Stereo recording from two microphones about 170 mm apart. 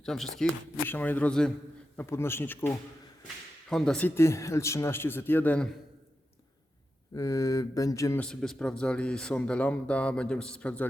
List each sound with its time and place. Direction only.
0.0 s speech: centre (ahead or behind)
7.2 s speech: 20° left (ahead or behind)
8.2 s speech: 5° left (ahead or behind)